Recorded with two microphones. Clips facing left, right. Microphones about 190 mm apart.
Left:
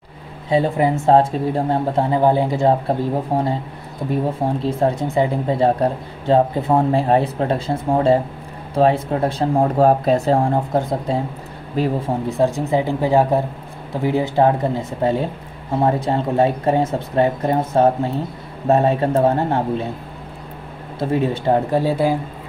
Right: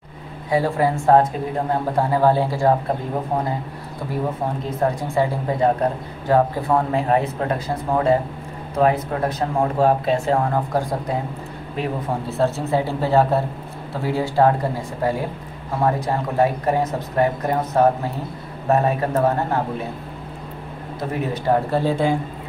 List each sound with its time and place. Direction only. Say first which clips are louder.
0.5 s a woman's voice: left 2 dB; 20° left (ahead or behind)
3.3 s speech: left 3 dB; 30° left (ahead or behind)
4.6 s a woman's voice: left 3 dB; 25° left (ahead or behind)
11.8 s speech: left 6 dB; 35° left (ahead or behind)
12.3 s a woman's voice: left 2 dB; 15° left (ahead or behind)
21.0 s a woman's voice: left 6 dB; 30° left (ahead or behind)
21.7 s speech: left 2 dB; 10° left (ahead or behind)